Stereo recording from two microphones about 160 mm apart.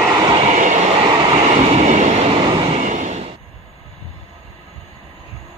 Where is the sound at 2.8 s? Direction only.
50° right (ahead or behind).